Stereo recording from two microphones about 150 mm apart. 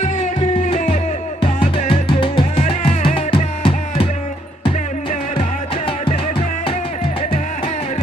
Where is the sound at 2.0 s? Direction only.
35° left (ahead or behind).